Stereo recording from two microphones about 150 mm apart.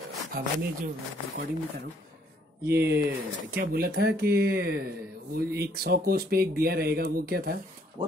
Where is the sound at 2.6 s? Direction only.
90° right.